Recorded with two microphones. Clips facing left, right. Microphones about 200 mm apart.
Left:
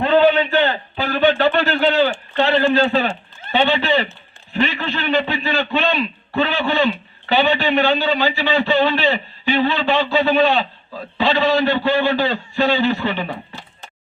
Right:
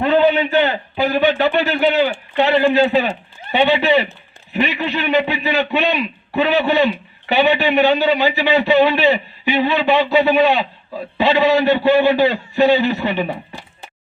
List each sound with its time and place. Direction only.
0.5 s a man's voice: 10° right (ahead or behind)